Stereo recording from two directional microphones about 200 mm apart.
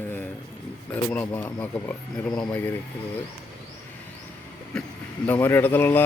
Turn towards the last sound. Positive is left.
turn(degrees=10)  # may be behind; listen again after turning